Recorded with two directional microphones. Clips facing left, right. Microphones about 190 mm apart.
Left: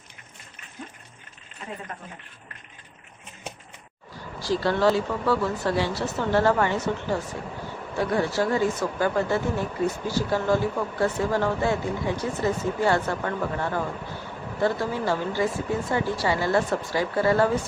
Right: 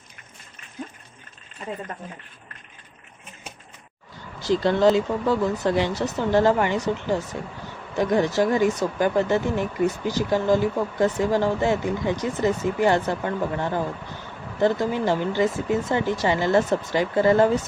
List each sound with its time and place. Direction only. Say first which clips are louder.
4.4 s speech: right 3 dB; 20° right (ahead or behind)